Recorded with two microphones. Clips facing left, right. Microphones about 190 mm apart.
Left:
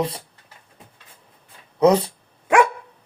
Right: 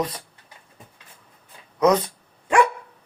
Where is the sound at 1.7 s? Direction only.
30° left (ahead or behind).